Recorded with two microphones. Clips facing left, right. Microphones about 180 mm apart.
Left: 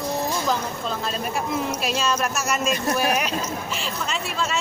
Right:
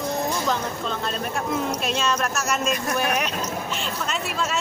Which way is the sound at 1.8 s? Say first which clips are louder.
Even; centre (ahead or behind).